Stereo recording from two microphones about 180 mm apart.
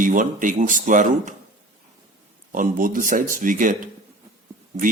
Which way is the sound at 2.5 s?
50° right (ahead or behind).